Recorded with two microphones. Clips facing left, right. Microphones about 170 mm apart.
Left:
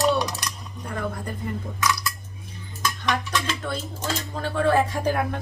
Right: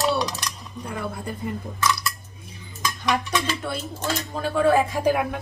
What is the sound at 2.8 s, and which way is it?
Stir, 10° right (ahead or behind).